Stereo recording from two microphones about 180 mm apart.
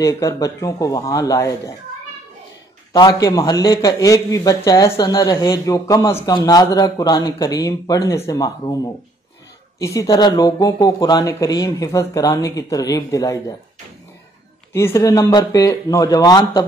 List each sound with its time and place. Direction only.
0.0 s speech: 15° left (ahead or behind)
2.9 s speech: 25° left (ahead or behind)
14.7 s speech: 15° left (ahead or behind)